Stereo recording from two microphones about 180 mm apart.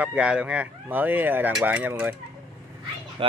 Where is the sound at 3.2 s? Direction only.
30° right (ahead or behind).